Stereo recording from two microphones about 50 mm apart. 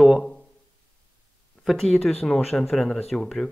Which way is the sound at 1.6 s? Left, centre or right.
Centre.